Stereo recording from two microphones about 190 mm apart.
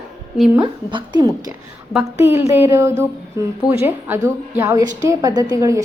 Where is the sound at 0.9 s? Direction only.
20° right (ahead or behind).